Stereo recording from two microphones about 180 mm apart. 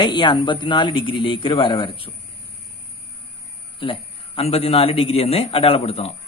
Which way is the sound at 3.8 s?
30° left (ahead or behind).